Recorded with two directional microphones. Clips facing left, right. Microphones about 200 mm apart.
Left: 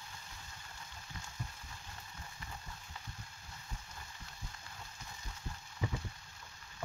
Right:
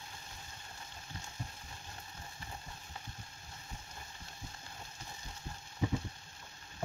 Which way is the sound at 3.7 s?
30° right (ahead or behind).